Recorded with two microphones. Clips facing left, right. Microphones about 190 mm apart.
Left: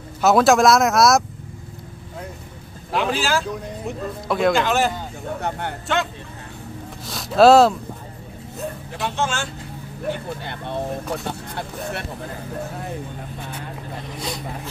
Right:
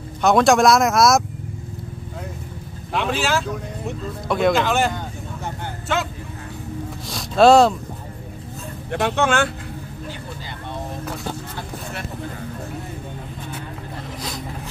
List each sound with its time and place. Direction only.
0.2 s speech: 5° left (ahead or behind)
2.9 s speech: centre (ahead or behind)
7.1 s speech: centre (ahead or behind)
8.9 s speech: 60° right (ahead or behind)
10.0 s speech: 60° left (ahead or behind)